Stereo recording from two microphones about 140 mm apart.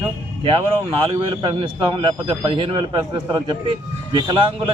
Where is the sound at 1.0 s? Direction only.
40° right (ahead or behind).